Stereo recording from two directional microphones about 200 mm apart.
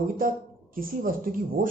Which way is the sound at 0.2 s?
45° right (ahead or behind).